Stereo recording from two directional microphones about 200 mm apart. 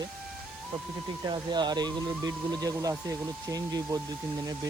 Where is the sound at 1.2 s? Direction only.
20° right (ahead or behind).